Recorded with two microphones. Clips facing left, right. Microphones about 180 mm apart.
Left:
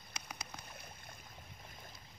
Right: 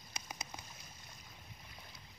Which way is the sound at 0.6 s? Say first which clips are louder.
Left 4 dB; 60° left (ahead or behind).